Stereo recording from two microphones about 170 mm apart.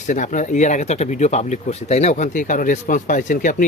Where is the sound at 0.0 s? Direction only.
50° left (ahead or behind).